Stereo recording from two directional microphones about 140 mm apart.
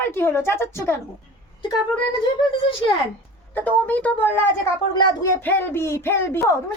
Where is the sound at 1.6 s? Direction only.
35° left (ahead or behind).